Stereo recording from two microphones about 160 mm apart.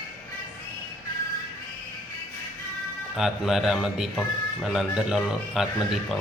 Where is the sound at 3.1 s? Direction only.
Centre (ahead or behind).